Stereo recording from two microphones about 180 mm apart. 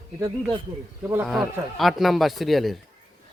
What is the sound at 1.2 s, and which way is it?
Speech, centre (ahead or behind).